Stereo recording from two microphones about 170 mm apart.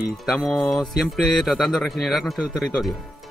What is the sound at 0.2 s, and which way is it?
A man's voice, 5° right (ahead or behind).